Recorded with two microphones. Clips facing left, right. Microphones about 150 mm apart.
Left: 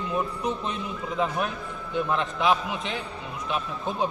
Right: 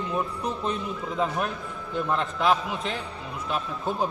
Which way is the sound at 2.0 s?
Centre (ahead or behind).